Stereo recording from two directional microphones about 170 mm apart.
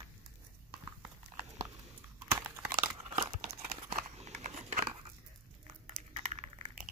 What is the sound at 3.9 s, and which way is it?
Scissors, 45° right (ahead or behind).